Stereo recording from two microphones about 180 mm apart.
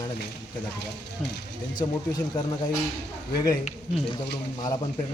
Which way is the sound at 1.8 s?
20° left (ahead or behind).